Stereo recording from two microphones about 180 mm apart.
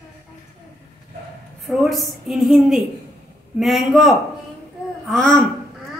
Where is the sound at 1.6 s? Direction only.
Centre (ahead or behind).